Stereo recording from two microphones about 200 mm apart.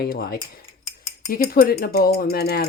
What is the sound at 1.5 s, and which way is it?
A woman's voice, 50° left (ahead or behind).